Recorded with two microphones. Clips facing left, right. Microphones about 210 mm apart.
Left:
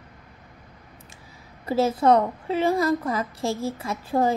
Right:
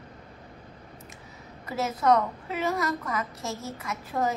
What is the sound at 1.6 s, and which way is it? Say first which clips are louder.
A woman's voice: left 6 dB; 30° left (ahead or behind).